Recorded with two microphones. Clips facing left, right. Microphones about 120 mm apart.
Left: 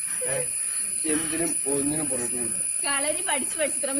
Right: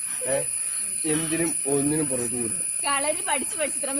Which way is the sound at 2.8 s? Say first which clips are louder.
Right 3 dB; 50° right (ahead or behind).